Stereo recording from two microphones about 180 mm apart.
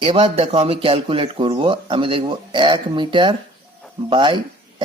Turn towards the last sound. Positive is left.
turn(degrees=-25)  # may be behind; listen again after turning